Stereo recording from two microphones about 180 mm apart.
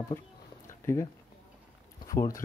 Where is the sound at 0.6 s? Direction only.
15° left (ahead or behind).